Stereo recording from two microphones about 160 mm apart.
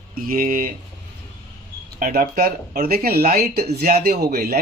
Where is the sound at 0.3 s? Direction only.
60° right (ahead or behind).